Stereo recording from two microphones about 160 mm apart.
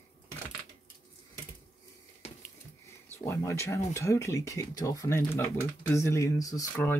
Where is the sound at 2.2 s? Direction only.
40° left (ahead or behind).